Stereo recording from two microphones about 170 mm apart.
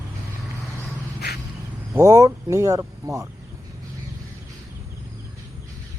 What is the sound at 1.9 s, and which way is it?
Speech, 20° right (ahead or behind).